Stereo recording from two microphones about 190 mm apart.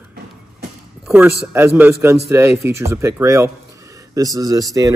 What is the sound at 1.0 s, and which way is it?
Speech, 5° right (ahead or behind).